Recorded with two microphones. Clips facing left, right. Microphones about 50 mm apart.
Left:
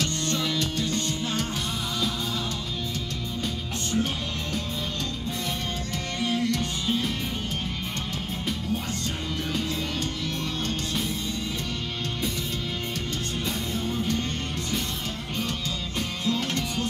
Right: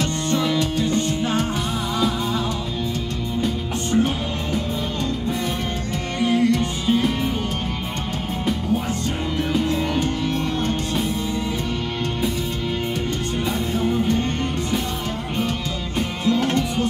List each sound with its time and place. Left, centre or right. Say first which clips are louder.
0.0 s music: right 6 dB; centre
3.4 s music: right 7 dB; right
6.1 s music: right 8 dB; centre
9.4 s music: right 9 dB; centre
13.5 s music: right 9 dB; centre
16.0 s music: right 8 dB; right